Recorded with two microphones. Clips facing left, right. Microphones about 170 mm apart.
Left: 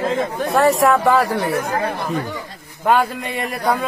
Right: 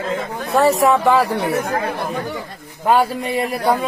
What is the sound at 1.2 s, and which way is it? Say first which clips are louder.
Speech: even; 20° right (ahead or behind).